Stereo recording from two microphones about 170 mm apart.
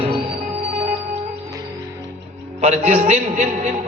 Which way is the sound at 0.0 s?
30° right (ahead or behind).